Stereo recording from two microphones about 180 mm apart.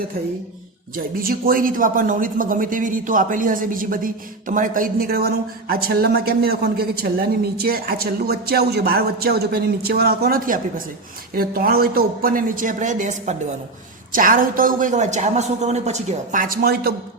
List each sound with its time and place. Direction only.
0.9 s speech: 55° right (ahead or behind)